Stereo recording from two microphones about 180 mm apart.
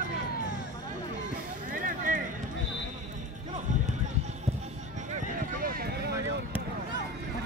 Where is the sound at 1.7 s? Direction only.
50° right (ahead or behind).